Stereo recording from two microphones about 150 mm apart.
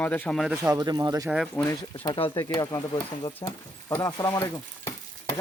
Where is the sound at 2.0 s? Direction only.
35° left (ahead or behind).